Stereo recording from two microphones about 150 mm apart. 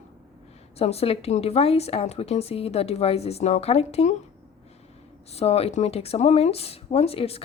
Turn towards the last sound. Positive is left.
turn(degrees=40)  # may be behind; listen again after turning